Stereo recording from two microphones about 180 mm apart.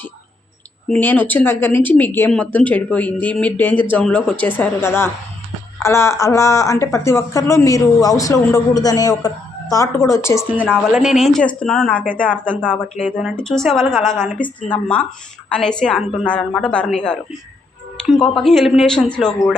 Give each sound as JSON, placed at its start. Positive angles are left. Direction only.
{"t": 0.9, "sound": "speech", "side_deg": 10}
{"t": 10.9, "sound": "a woman's voice", "side_deg": 0}